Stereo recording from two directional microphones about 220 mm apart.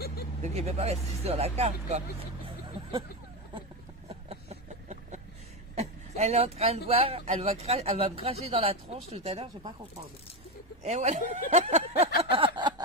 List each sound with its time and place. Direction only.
0.0 s vehicle: 45° left (ahead or behind)
0.4 s speech: 30° right (ahead or behind)
4.1 s a sound: 25° right (ahead or behind)
5.8 s speech: 30° right (ahead or behind)
10.8 s speech: 30° right (ahead or behind)